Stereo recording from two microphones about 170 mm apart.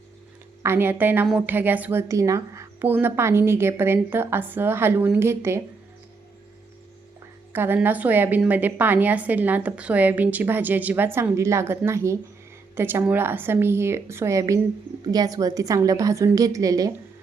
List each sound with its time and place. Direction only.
0.6 s a woman's voice: 15° right (ahead or behind)
7.5 s a woman's voice: 10° right (ahead or behind)